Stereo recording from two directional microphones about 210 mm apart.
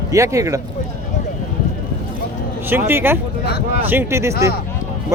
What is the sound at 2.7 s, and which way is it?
Speech, 10° right (ahead or behind).